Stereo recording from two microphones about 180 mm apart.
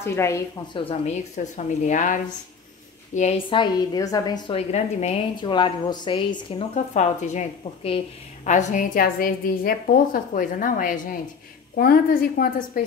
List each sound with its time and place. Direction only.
0.0 s a woman's voice: 15° left (ahead or behind)
0.7 s a woman's voice: 35° left (ahead or behind)
3.2 s a woman's voice: 35° left (ahead or behind)
5.4 s a woman's voice: 25° left (ahead or behind)
6.3 s a woman's voice: 40° left (ahead or behind)